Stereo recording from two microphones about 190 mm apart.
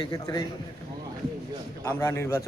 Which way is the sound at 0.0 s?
20° left (ahead or behind).